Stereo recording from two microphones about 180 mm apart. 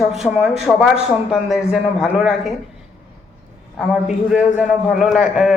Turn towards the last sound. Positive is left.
turn(degrees=-5)  # may be behind; listen again after turning